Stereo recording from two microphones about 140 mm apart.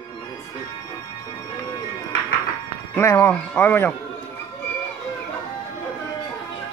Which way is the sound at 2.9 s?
15° left (ahead or behind).